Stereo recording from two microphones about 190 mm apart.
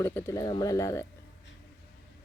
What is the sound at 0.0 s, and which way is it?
Speech, 10° left (ahead or behind).